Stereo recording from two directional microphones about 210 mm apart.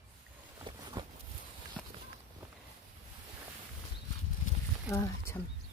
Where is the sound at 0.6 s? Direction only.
20° right (ahead or behind).